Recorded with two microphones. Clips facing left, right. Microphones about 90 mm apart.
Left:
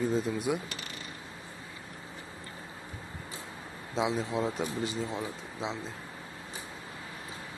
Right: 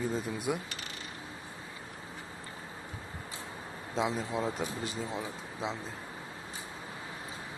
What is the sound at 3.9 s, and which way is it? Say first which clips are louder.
Speech: left 2 dB; centre (ahead or behind).